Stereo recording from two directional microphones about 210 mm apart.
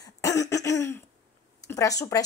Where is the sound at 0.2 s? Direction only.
15° left (ahead or behind).